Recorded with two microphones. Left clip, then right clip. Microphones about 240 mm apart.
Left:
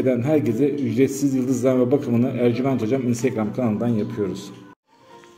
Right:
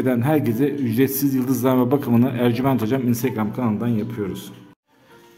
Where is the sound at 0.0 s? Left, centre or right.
Right.